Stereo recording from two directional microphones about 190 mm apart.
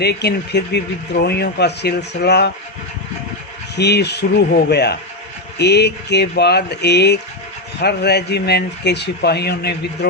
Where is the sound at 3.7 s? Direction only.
60° left (ahead or behind).